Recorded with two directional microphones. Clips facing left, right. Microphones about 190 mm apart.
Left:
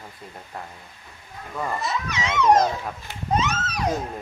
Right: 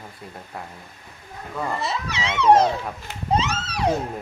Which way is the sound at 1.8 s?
30° right (ahead or behind).